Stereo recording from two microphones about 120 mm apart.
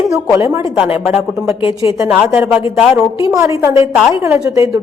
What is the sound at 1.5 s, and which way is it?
Speech, 50° left (ahead or behind).